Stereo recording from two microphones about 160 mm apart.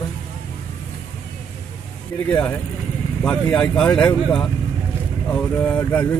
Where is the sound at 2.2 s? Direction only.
10° left (ahead or behind).